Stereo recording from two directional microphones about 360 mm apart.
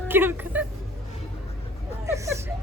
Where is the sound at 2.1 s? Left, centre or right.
Centre.